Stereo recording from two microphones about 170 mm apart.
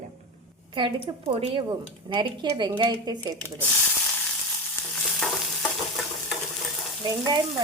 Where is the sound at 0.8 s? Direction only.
35° right (ahead or behind).